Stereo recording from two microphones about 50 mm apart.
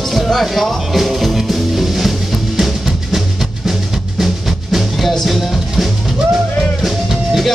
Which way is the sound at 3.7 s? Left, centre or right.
Centre.